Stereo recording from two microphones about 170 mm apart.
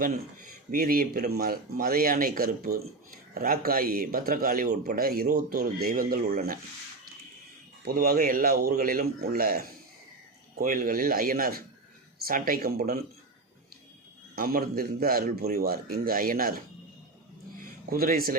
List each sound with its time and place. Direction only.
0.7 s speech: 60° right (ahead or behind)
7.9 s speech: 60° right (ahead or behind)
14.3 s speech: 55° right (ahead or behind)
17.6 s a sound: 60° right (ahead or behind)